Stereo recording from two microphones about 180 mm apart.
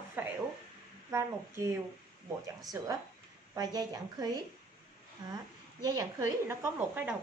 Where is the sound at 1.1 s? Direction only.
15° right (ahead or behind).